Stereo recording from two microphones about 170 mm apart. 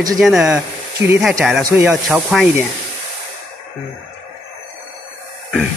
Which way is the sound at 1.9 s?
Centre (ahead or behind).